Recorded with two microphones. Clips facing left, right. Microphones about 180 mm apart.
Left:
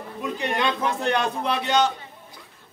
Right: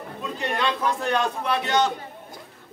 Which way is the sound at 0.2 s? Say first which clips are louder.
Left 2 dB; 20° left (ahead or behind).